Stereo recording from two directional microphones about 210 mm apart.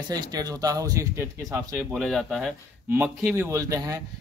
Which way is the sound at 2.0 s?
Centre (ahead or behind).